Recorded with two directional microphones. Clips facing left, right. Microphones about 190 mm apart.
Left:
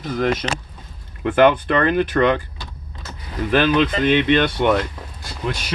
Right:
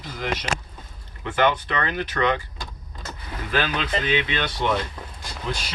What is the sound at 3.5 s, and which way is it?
Speech, 55° left (ahead or behind).